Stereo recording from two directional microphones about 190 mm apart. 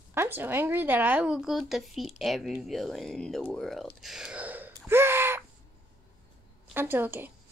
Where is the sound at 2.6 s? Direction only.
Centre (ahead or behind).